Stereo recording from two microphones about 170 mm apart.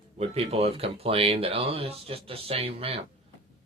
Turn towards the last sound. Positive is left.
turn(degrees=-35)  # may be behind; listen again after turning